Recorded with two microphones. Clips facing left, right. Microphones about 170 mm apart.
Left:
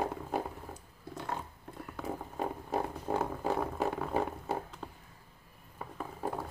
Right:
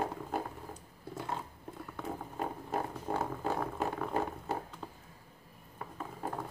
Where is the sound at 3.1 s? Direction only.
Centre (ahead or behind).